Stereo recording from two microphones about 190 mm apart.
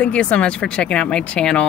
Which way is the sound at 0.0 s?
5° left (ahead or behind).